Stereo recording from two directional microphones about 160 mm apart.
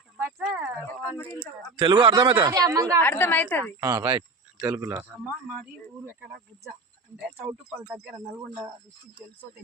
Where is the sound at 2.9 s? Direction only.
15° left (ahead or behind).